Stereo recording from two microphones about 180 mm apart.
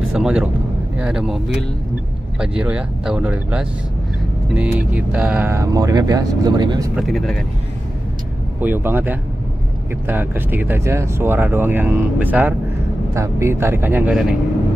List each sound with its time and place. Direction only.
0.1 s speech: 5° right (ahead or behind)
2.4 s speech: 5° right (ahead or behind); by 6.9 s 20° right (ahead or behind)
7.0 s speech: centre (ahead or behind)
8.5 s speech: 10° right (ahead or behind)